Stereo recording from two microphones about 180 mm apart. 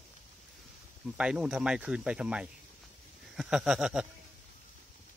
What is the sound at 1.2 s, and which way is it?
Speech, 5° right (ahead or behind).